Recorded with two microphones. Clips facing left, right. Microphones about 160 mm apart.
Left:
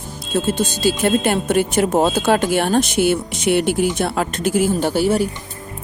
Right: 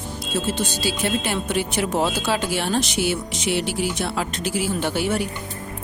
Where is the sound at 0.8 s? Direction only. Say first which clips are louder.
Left 10 dB; 50° left (ahead or behind).